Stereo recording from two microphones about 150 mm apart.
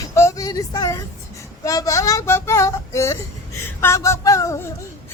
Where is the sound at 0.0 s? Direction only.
20° left (ahead or behind).